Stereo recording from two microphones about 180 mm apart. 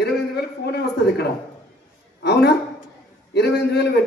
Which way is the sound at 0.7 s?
65° left (ahead or behind).